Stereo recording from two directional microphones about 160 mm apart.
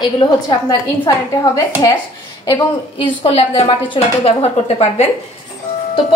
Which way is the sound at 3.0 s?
35° left (ahead or behind).